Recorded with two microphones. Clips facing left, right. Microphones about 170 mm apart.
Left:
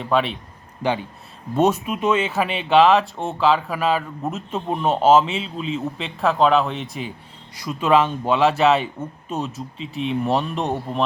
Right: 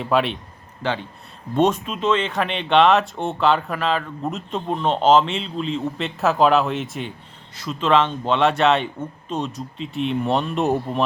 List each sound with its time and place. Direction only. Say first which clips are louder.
0.0 s speech: even; centre (ahead or behind)
0.8 s speech: left 2 dB; 15° left (ahead or behind)
7.5 s speech: left 1 dB; 10° left (ahead or behind)